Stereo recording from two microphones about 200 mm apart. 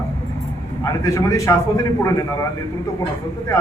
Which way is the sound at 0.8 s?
15° left (ahead or behind).